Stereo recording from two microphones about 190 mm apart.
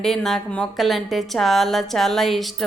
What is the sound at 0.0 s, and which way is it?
A woman's voice, centre (ahead or behind).